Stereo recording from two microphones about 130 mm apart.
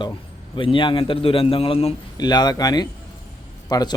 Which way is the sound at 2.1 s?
30° left (ahead or behind).